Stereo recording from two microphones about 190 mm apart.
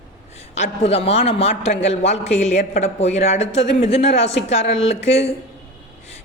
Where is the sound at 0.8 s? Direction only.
30° left (ahead or behind).